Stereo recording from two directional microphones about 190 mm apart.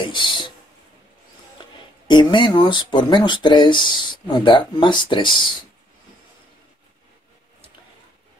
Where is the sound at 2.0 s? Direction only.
25° left (ahead or behind).